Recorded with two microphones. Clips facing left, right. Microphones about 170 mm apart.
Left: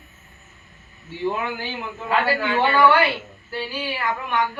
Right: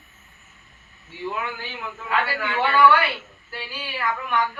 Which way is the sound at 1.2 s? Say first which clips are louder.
Left 5 dB; 30° left (ahead or behind).